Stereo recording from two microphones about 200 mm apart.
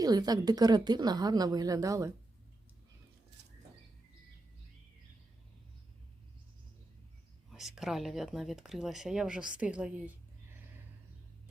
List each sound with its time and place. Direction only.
0.0 s a woman's voice: 20° right (ahead or behind)
7.5 s speech: centre (ahead or behind)